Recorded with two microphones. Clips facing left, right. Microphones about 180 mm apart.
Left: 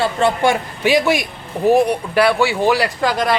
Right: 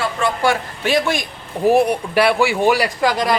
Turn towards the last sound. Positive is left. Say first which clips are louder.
# even
turn(degrees=0)  # may be behind; listen again after turning